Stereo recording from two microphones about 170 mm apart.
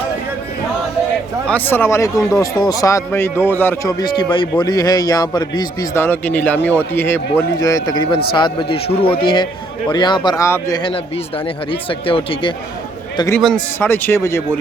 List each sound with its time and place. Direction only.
1.5 s a man's voice: 10° left (ahead or behind); by 12.5 s 30° left (ahead or behind)
13.3 s a man's voice: 5° left (ahead or behind)
13.7 s speech: 15° left (ahead or behind)